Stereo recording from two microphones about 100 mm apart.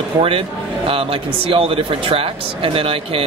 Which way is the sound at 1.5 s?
70° right (ahead or behind).